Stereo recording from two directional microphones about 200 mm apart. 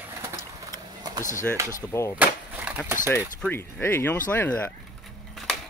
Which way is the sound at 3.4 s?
10° left (ahead or behind).